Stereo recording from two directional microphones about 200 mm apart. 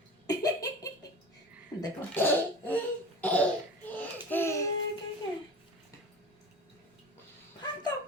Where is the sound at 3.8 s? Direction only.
10° left (ahead or behind).